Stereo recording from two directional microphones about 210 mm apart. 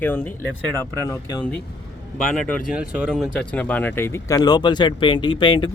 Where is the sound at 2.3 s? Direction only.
5° left (ahead or behind).